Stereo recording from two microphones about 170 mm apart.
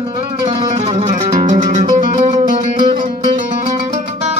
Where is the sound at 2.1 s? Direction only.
30° right (ahead or behind).